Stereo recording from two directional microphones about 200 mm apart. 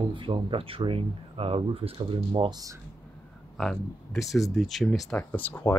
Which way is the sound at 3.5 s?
Centre (ahead or behind).